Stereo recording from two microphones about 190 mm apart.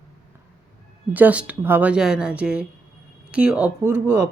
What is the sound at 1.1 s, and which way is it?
A woman's voice, 10° right (ahead or behind).